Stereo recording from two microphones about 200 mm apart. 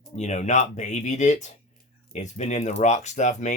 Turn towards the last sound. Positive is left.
turn(degrees=35)  # may be behind; listen again after turning